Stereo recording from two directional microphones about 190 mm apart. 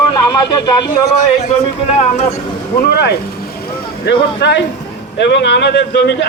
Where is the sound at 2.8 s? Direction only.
60° left (ahead or behind).